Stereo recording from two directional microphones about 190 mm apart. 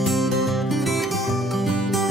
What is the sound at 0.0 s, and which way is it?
Music, centre (ahead or behind).